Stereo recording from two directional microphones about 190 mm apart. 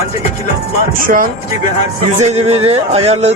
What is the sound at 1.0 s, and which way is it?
Speech, 45° right (ahead or behind).